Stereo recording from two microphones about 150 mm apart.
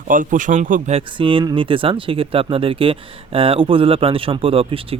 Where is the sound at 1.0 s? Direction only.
35° right (ahead or behind).